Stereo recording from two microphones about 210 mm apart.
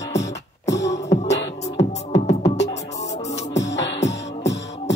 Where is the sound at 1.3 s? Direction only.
55° left (ahead or behind).